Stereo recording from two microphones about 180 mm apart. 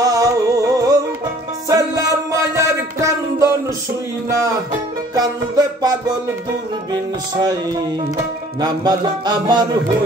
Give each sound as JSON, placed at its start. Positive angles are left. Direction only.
{"t": 0.0, "sound": "music", "side_deg": -20}
{"t": 5.1, "sound": "music", "side_deg": -20}